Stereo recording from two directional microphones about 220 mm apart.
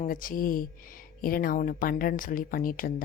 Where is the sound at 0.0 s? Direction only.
40° left (ahead or behind).